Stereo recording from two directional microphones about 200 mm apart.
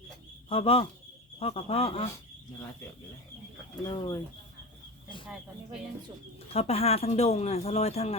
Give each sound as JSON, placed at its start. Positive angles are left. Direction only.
{"t": 0.4, "sound": "speech", "side_deg": 25}
{"t": 3.8, "sound": "speech", "side_deg": 20}
{"t": 6.5, "sound": "speech", "side_deg": 30}